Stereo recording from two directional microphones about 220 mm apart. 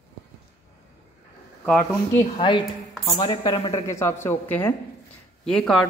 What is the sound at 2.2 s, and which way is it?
Speech, 20° left (ahead or behind).